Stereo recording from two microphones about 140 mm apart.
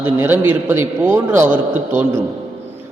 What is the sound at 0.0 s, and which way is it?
A man's voice, 15° right (ahead or behind).